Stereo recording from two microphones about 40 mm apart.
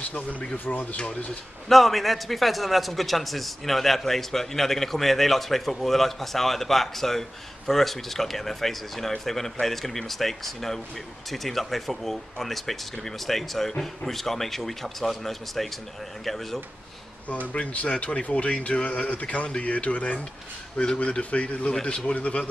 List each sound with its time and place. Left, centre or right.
0.1 s speech: left
1.7 s a man's voice: centre
17.5 s speech: left
20.7 s speech: left
21.0 s speech: left